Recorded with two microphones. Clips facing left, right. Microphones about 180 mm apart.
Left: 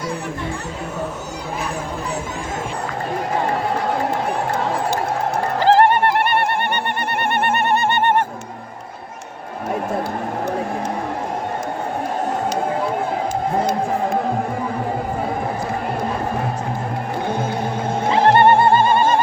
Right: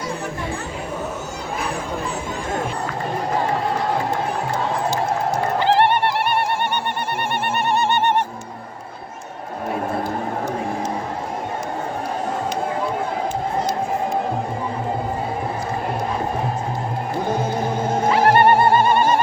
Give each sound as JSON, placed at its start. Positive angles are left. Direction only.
{"t": 5.5, "sound": "bird", "side_deg": 40}
{"t": 18.1, "sound": "music", "side_deg": 25}